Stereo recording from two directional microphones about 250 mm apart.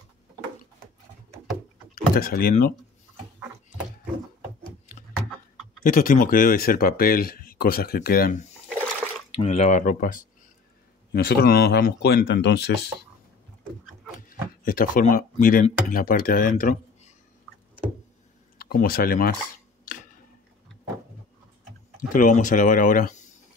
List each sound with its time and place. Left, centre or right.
2.1 s speech: left
5.9 s speech: left
9.3 s speech: left
14.6 s speech: left
18.6 s speech: left
22.1 s speech: left